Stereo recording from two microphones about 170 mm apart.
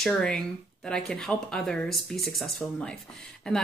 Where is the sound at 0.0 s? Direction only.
5° left (ahead or behind).